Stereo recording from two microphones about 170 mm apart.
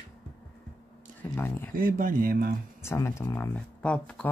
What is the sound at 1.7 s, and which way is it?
Speech, 55° right (ahead or behind).